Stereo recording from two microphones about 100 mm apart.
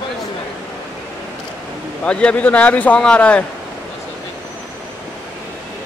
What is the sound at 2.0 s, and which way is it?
A man's voice, 10° left (ahead or behind).